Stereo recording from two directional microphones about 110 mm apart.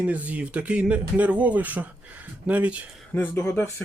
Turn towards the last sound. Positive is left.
turn(degrees=20)  # may be behind; listen again after turning